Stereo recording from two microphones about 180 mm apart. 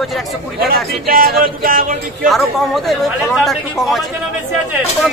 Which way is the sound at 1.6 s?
50° right (ahead or behind).